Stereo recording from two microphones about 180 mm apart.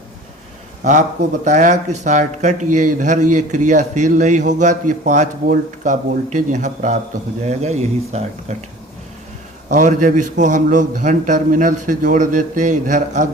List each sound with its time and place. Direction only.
1.5 s speech: 40° right (ahead or behind)
9.6 s speech: 45° right (ahead or behind)